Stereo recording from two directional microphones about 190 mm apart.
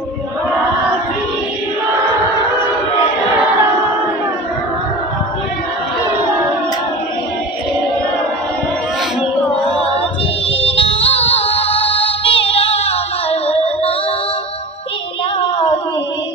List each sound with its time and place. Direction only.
10.8 s music: 30° left (ahead or behind)